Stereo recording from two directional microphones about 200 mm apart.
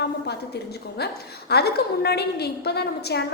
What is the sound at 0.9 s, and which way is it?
A woman's voice, 55° left (ahead or behind).